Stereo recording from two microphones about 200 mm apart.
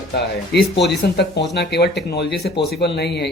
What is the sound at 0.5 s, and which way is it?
Speech, 60° left (ahead or behind).